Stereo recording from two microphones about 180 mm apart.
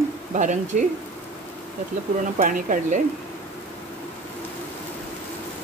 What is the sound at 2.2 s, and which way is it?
Speech, 45° right (ahead or behind).